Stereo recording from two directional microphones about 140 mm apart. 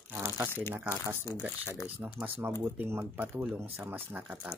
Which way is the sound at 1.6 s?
20° left (ahead or behind).